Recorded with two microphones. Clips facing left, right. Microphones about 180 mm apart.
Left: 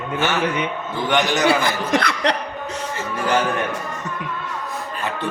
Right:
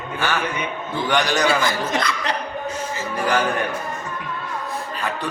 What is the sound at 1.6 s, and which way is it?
Speech, 60° left (ahead or behind).